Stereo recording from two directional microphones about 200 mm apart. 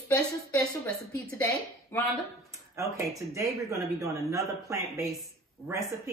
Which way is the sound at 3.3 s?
15° right (ahead or behind).